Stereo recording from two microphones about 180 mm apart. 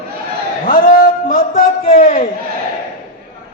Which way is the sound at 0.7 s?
50° left (ahead or behind).